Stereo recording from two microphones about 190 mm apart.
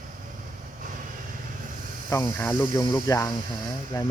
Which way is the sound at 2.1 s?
10° left (ahead or behind).